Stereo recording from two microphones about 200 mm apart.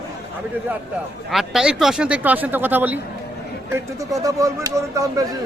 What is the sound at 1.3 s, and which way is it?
Speech, centre (ahead or behind).